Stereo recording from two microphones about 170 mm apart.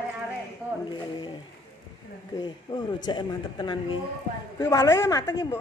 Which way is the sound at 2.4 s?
25° left (ahead or behind).